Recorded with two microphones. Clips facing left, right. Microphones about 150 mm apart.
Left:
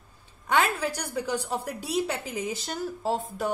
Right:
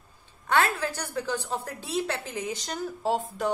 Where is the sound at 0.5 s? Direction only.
15° left (ahead or behind).